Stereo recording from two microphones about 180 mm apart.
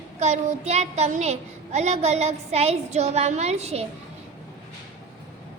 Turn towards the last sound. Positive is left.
turn(degrees=-35)  # may be behind; listen again after turning